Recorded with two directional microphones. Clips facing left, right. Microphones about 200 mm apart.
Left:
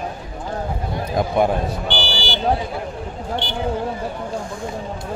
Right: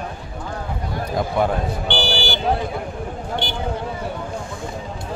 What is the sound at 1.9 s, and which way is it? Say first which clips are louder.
Buzzer: right 2 dB; 60° right (ahead or behind).